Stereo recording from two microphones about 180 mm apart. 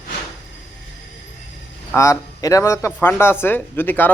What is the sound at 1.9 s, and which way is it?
Speech, 15° left (ahead or behind).